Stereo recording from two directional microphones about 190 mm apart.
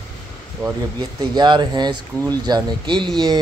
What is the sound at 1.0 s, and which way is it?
Speech, 20° right (ahead or behind).